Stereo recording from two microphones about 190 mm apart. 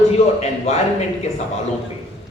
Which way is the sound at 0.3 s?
35° left (ahead or behind).